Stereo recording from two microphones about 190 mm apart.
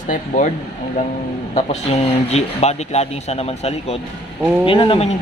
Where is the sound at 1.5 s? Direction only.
35° left (ahead or behind).